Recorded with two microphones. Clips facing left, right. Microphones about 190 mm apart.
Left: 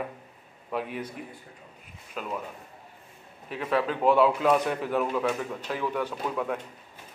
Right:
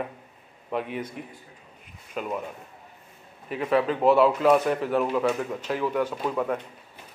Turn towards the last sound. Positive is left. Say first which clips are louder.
# right 3 dB
turn(degrees=-5)  # may be behind; listen again after turning